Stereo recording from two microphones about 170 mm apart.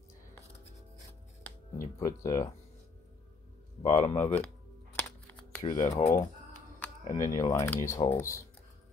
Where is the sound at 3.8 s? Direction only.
40° left (ahead or behind).